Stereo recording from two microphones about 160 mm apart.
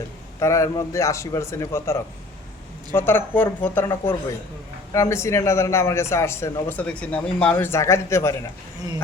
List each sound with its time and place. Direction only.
0.3 s a man's voice: 20° left (ahead or behind)